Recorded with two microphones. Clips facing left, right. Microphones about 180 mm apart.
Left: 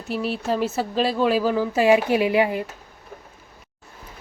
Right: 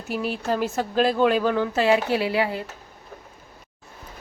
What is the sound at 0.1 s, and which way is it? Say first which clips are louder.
Speech: left 1 dB; centre (ahead or behind).